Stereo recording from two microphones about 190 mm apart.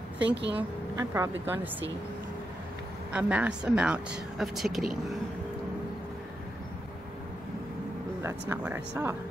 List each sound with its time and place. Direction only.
0.3 s speech: 65° right (ahead or behind)
1.1 s speech: 10° right (ahead or behind)
3.1 s speech: 5° right (ahead or behind)
8.2 s speech: 15° right (ahead or behind)